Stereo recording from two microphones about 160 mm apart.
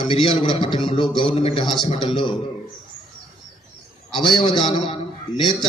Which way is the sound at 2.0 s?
30° left (ahead or behind).